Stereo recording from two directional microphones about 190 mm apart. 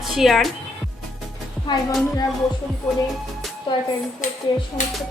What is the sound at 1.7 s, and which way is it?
Speech, 25° left (ahead or behind).